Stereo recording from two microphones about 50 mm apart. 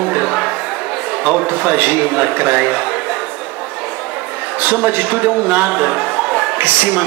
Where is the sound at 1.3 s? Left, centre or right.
Right.